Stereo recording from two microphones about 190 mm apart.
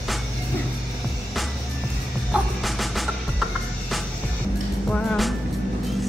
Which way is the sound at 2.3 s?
Centre (ahead or behind).